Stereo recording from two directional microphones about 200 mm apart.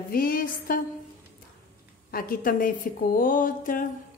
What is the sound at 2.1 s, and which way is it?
A woman's voice, 45° left (ahead or behind).